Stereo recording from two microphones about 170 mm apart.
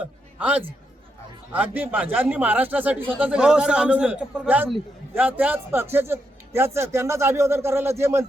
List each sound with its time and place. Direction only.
0.0 s a man's voice: 10° right (ahead or behind)